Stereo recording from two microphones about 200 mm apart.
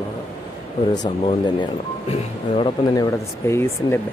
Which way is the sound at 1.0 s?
30° left (ahead or behind).